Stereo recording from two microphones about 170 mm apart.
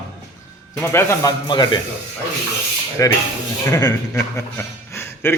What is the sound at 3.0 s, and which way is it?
A man's voice, 15° left (ahead or behind).